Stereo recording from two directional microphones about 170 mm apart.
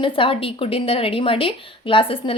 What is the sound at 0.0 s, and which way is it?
A woman's voice, 30° left (ahead or behind).